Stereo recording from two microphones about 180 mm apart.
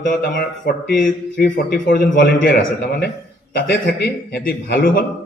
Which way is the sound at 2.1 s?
60° left (ahead or behind).